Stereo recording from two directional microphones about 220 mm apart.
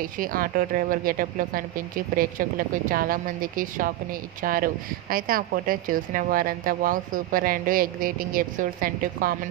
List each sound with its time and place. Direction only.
0.2 s a woman's voice: 40° right (ahead or behind)